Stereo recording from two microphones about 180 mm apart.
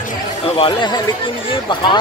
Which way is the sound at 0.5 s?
25° left (ahead or behind).